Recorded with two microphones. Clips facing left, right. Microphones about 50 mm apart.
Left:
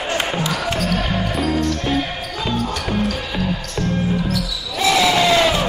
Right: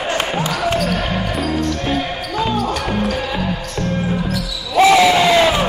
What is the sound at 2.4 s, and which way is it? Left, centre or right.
Music, centre.